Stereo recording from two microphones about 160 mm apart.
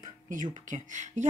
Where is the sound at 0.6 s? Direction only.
50° right (ahead or behind).